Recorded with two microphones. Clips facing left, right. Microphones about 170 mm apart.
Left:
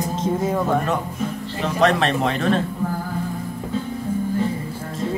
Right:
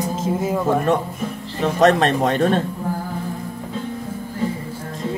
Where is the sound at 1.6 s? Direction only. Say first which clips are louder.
Right 3 dB; 45° right (ahead or behind).